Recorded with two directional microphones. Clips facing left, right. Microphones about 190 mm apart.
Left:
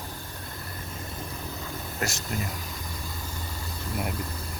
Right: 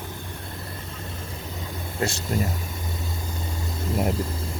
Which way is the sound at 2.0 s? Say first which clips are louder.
Right 6 dB; 25° right (ahead or behind).